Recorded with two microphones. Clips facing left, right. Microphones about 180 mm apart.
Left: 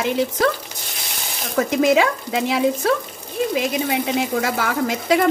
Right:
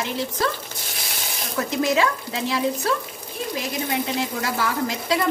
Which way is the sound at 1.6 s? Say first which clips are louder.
Left 5 dB; 55° left (ahead or behind).